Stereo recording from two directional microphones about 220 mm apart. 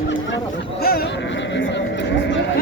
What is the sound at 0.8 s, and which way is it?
Speech, 45° left (ahead or behind).